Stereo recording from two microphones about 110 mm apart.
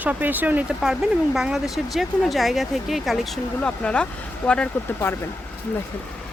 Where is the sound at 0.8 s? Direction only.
5° right (ahead or behind); by 4.6 s 15° left (ahead or behind).